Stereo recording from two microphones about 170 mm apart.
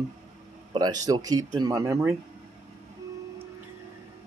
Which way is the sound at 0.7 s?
25° right (ahead or behind).